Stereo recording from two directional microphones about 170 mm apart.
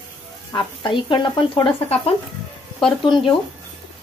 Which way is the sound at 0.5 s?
30° left (ahead or behind).